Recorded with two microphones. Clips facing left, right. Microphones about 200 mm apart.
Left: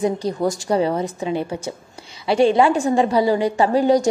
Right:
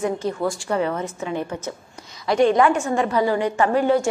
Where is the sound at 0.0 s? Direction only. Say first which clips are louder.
Left 3 dB; 35° left (ahead or behind).